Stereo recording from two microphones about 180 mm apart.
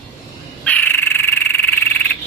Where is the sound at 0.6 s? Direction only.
10° left (ahead or behind).